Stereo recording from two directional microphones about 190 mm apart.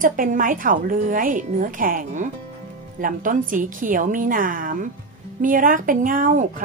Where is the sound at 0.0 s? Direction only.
45° right (ahead or behind).